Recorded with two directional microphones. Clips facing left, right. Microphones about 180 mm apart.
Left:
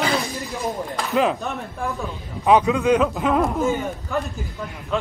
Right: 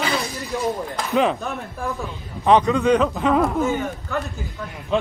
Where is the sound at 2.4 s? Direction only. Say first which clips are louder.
Even; 5° left (ahead or behind).